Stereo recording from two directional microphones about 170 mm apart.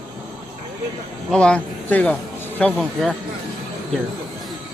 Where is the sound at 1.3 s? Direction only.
5° left (ahead or behind).